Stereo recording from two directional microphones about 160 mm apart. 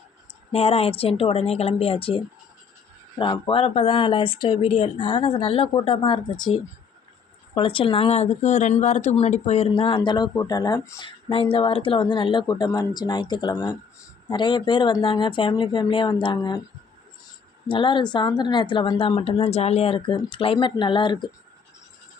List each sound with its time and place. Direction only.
0.5 s speech: 40° left (ahead or behind)
17.7 s speech: 30° left (ahead or behind)